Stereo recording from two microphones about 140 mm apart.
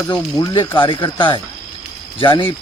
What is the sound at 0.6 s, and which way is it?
Speech, 35° left (ahead or behind).